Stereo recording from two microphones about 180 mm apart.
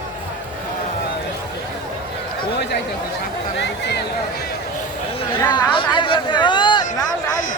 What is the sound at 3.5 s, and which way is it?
Speech, 70° left (ahead or behind).